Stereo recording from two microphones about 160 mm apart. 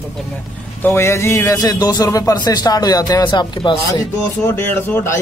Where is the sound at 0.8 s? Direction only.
15° left (ahead or behind).